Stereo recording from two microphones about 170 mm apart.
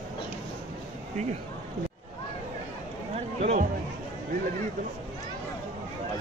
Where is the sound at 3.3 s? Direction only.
40° right (ahead or behind).